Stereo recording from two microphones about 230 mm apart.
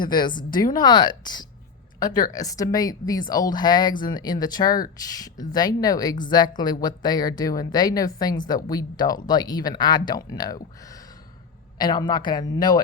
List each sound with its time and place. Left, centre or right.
0.0 s a woman's voice: centre